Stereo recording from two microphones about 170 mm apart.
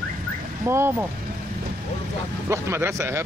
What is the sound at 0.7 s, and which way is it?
Speech, 15° right (ahead or behind).